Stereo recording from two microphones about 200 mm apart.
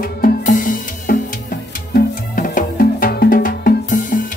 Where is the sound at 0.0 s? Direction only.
45° left (ahead or behind).